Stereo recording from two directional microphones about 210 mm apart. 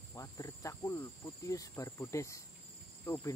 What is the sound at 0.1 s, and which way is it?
Cricket, 15° left (ahead or behind).